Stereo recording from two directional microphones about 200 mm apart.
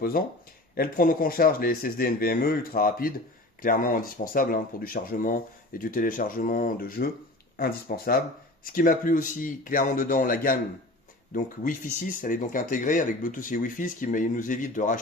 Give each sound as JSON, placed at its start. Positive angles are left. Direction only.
{"t": 0.2, "sound": "speech", "side_deg": 45}